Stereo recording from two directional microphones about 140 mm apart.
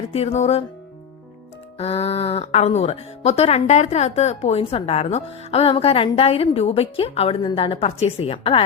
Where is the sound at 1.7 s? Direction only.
45° left (ahead or behind).